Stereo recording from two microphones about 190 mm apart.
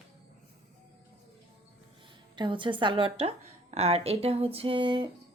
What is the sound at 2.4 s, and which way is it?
A woman's voice, 25° right (ahead or behind).